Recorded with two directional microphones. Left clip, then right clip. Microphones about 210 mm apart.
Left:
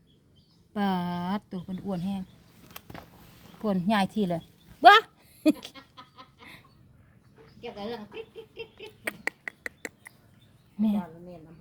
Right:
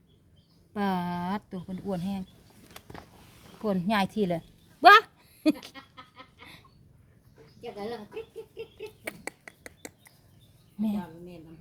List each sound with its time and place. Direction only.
0.7 s speech: 5° left (ahead or behind)
2.6 s a sound: 20° left (ahead or behind)
3.6 s a woman's voice: centre (ahead or behind)
5.7 s goat: 30° right (ahead or behind)
6.4 s a sound: centre (ahead or behind)
7.6 s speech: 25° right (ahead or behind)
8.8 s finger snapping: 5° left (ahead or behind)